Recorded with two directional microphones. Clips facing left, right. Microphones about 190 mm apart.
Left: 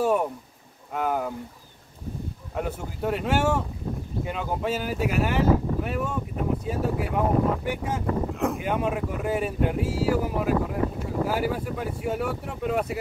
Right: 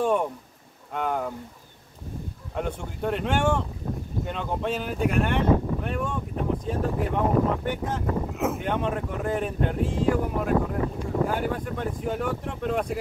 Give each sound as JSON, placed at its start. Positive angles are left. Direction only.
{"t": 0.0, "sound": "speech", "side_deg": 5}
{"t": 2.5, "sound": "speech", "side_deg": 5}